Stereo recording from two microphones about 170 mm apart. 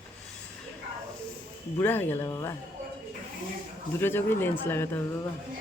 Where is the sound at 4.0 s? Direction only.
15° left (ahead or behind).